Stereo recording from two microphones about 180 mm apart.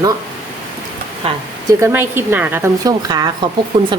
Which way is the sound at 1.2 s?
35° right (ahead or behind).